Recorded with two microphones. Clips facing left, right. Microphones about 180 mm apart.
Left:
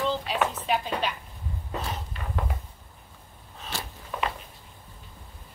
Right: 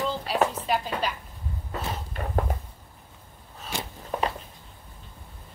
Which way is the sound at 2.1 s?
40° right (ahead or behind).